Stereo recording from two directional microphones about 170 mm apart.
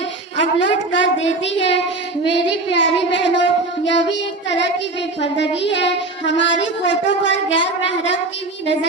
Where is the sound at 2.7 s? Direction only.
90° left.